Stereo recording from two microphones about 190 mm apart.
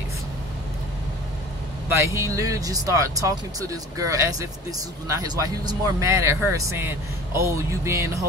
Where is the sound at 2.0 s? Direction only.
15° right (ahead or behind).